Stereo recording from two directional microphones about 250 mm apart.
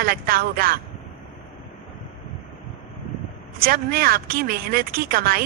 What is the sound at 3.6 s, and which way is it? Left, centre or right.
Speech, right.